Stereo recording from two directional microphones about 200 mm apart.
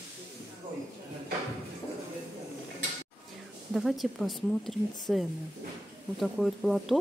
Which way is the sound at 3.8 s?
Centre (ahead or behind).